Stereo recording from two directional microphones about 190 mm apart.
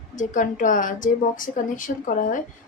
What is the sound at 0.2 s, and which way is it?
A woman's voice, 45° left (ahead or behind).